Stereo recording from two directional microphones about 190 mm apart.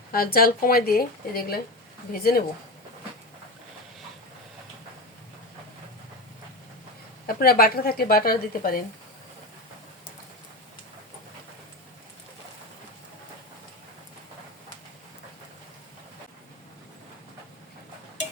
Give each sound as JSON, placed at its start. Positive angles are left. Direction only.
{"t": 0.1, "sound": "speech", "side_deg": 50}
{"t": 7.3, "sound": "speech", "side_deg": 50}